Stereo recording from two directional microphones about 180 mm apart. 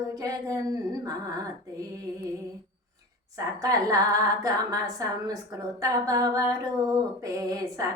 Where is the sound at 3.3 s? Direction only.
20° right (ahead or behind).